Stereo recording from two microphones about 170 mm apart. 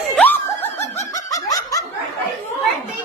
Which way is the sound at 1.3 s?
20° left (ahead or behind).